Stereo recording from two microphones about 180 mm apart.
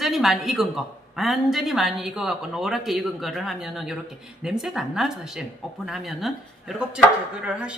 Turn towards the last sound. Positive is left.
turn(degrees=-5)  # may be behind; listen again after turning